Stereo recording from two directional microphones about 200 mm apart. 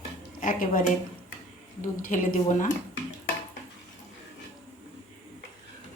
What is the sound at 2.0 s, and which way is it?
Speech, 40° left (ahead or behind).